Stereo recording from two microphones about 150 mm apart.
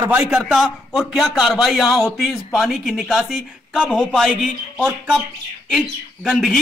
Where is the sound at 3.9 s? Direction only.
5° left (ahead or behind).